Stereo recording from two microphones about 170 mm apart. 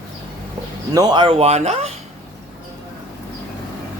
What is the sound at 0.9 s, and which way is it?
Speech, 25° right (ahead or behind).